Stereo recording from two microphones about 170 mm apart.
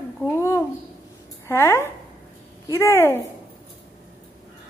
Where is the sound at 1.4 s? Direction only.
15° left (ahead or behind).